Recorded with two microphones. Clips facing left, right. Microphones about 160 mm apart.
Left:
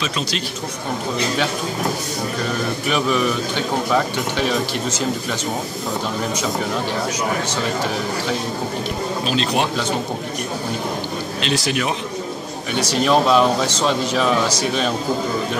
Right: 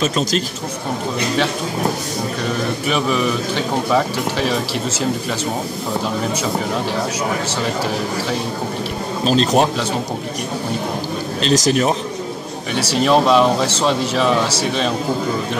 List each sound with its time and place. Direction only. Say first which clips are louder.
2.9 s a man's voice: even; centre (ahead or behind)
9.2 s speech: right 7 dB; 40° right (ahead or behind)
11.4 s speech: right 7 dB; 40° right (ahead or behind)
12.7 s a man's voice: right 2 dB; centre (ahead or behind)